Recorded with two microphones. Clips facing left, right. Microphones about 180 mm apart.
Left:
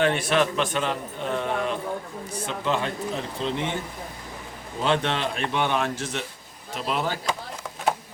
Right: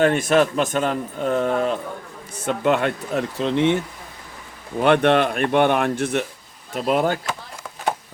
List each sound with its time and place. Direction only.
0.0 s a man's voice: 45° right (ahead or behind)
2.5 s a man's voice: 60° right (ahead or behind)
4.8 s a man's voice: 60° right (ahead or behind)